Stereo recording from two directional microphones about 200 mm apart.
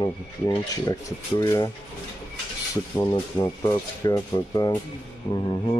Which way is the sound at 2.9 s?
20° left (ahead or behind).